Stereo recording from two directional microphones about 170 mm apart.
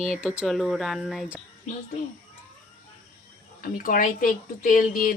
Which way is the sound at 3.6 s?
55° left (ahead or behind).